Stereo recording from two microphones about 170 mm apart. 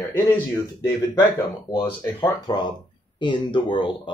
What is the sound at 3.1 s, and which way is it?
Speech, 25° left (ahead or behind).